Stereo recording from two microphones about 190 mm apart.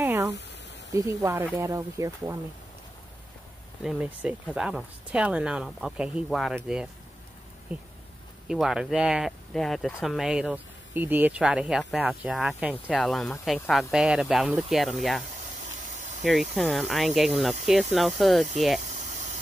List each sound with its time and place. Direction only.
0.0 s a sound: 15° right (ahead or behind)
0.9 s speech: 15° right (ahead or behind)
3.8 s speech: 5° right (ahead or behind)
8.5 s speech: 5° right (ahead or behind)
16.0 s a sound: 40° right (ahead or behind)
16.3 s speech: centre (ahead or behind)